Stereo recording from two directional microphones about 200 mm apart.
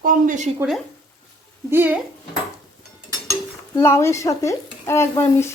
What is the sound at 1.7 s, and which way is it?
Speech, 10° right (ahead or behind).